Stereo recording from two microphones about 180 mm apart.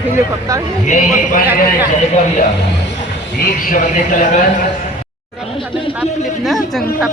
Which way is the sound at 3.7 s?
45° left (ahead or behind).